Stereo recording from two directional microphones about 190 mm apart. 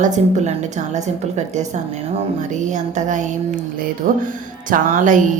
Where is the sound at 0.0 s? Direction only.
40° right (ahead or behind).